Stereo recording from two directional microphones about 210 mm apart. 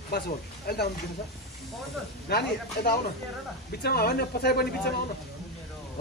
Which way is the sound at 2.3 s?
50° left (ahead or behind).